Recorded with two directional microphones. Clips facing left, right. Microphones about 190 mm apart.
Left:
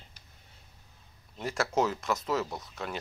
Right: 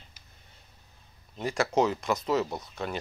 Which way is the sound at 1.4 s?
Centre (ahead or behind).